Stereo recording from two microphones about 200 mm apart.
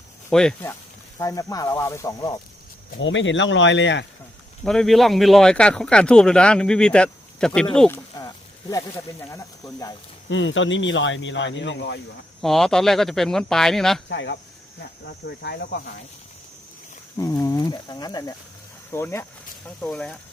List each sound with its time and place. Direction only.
0.3 s speech: 5° left (ahead or behind)
1.2 s speech: 15° left (ahead or behind)
3.0 s speech: 70° left (ahead or behind)
4.6 s speech: 5° left (ahead or behind)
9.3 s speech: 15° left (ahead or behind)
10.2 s speech: 70° left (ahead or behind)
12.4 s speech: centre (ahead or behind)
14.1 s speech: 60° left (ahead or behind)
17.2 s speech: 15° left (ahead or behind)